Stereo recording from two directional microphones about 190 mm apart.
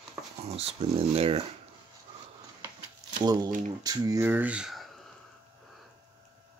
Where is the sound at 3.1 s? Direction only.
20° right (ahead or behind); by 5.1 s centre (ahead or behind).